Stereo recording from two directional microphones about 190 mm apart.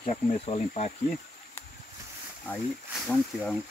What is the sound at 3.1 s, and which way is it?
Speech, 5° left (ahead or behind).